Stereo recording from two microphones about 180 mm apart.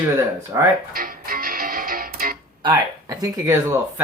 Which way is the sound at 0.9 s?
55° right (ahead or behind).